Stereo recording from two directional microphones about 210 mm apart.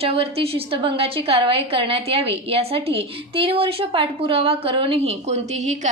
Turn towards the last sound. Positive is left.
turn(degrees=-30)  # may be behind; listen again after turning